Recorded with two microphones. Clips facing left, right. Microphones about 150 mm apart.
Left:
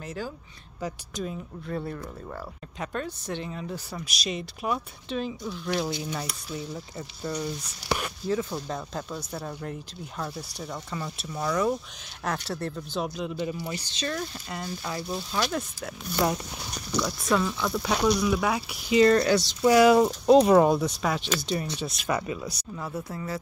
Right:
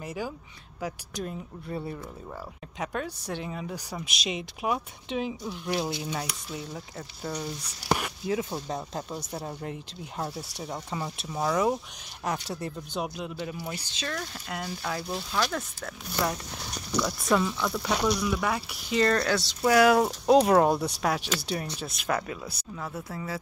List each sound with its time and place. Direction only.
0.0 s speech: 10° right (ahead or behind)
3.9 s speech: 15° right (ahead or behind)
8.3 s speech: 20° right (ahead or behind); by 16.3 s 15° left (ahead or behind)
17.5 s speech: 5° left (ahead or behind)
22.0 s speech: 5° left (ahead or behind)